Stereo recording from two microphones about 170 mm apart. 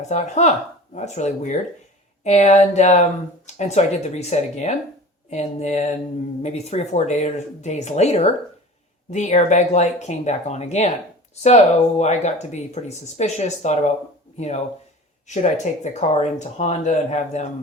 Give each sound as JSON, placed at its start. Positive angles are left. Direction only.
{"t": 0.1, "sound": "speech", "side_deg": 40}